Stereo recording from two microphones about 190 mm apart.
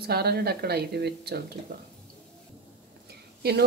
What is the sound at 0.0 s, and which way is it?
Speech, 55° right (ahead or behind).